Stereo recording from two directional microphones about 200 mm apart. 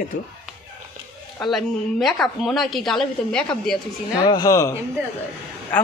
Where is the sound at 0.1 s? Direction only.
40° left (ahead or behind).